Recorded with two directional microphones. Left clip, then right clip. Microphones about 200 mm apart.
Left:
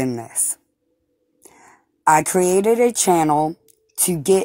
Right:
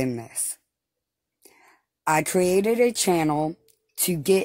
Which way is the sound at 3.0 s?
15° left (ahead or behind).